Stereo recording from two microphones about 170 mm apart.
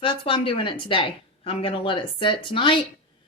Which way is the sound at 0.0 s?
30° left (ahead or behind).